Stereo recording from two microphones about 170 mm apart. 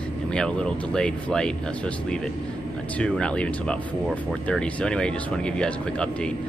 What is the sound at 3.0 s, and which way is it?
Speech, 5° left (ahead or behind).